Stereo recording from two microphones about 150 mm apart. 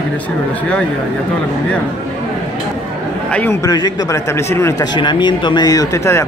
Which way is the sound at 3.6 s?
25° left (ahead or behind).